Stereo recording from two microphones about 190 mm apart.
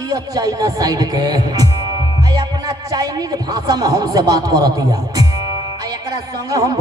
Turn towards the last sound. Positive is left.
turn(degrees=-20)  # may be behind; listen again after turning